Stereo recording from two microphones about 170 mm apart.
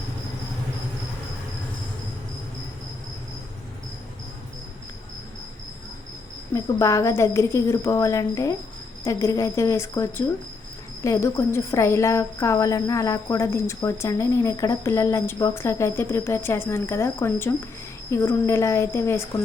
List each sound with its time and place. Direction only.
6.5 s a woman's voice: 15° left (ahead or behind)